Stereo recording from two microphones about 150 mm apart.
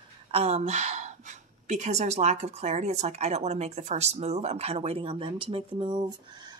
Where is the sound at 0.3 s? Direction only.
40° right (ahead or behind).